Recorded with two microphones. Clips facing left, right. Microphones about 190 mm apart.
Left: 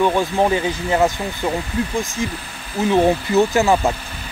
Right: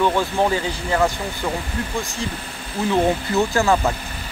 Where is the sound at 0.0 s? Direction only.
15° left (ahead or behind).